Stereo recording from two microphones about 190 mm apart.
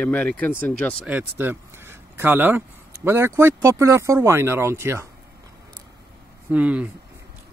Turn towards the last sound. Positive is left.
turn(degrees=-5)  # may be behind; listen again after turning